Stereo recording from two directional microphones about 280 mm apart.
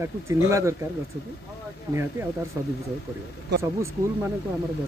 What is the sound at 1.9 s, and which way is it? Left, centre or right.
Speech, centre.